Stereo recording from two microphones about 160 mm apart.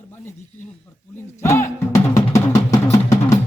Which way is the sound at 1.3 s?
15° left (ahead or behind).